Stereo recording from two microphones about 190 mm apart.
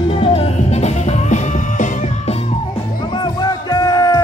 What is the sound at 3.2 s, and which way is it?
Music, 20° left (ahead or behind).